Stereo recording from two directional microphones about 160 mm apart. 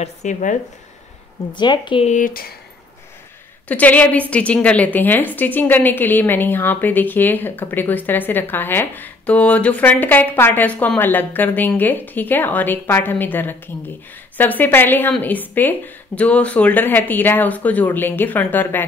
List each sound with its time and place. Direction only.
0.0 s speech: 50° left (ahead or behind)
1.5 s speech: 30° left (ahead or behind)
2.0 s speech: 55° left (ahead or behind)
3.6 s a woman's voice: 10° left (ahead or behind)